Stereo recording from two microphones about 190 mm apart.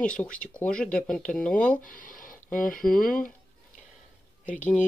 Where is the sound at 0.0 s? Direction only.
5° left (ahead or behind).